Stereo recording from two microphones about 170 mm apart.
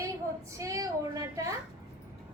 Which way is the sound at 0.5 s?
20° right (ahead or behind).